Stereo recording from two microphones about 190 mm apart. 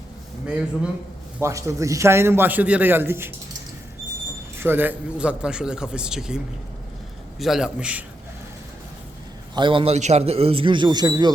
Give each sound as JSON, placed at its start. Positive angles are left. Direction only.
{"t": 0.4, "sound": "a man's voice", "side_deg": -5}
{"t": 1.4, "sound": "a man's voice", "side_deg": -15}
{"t": 4.6, "sound": "a man's voice", "side_deg": -10}
{"t": 9.6, "sound": "a man's voice", "side_deg": -25}